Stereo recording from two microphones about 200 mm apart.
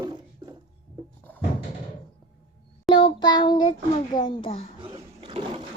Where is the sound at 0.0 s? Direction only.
20° right (ahead or behind).